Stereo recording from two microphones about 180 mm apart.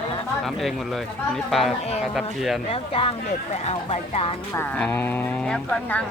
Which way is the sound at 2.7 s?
30° left (ahead or behind).